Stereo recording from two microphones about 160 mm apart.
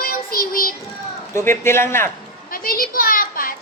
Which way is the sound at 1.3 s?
15° left (ahead or behind).